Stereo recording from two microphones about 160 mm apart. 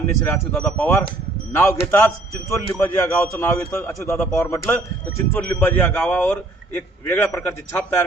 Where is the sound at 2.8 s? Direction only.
15° left (ahead or behind).